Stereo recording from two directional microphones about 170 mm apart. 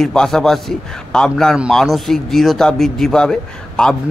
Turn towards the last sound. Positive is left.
turn(degrees=5)  # may be behind; listen again after turning